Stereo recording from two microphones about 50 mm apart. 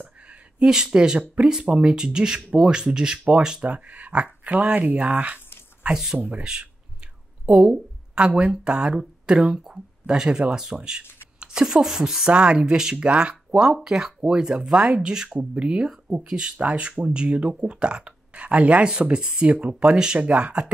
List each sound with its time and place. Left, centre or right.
0.3 s speech: centre
5.9 s speech: centre
6.1 s speech: right
6.4 s a woman's voice: centre
12.3 s speech: right
13.7 s speech: centre